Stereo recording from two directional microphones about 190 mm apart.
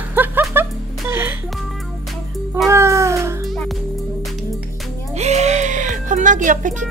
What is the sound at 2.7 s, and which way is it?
Meow, 15° right (ahead or behind).